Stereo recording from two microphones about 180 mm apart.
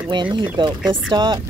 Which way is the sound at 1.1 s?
25° right (ahead or behind).